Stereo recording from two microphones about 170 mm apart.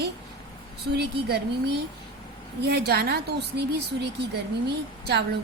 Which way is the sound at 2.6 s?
75° right (ahead or behind).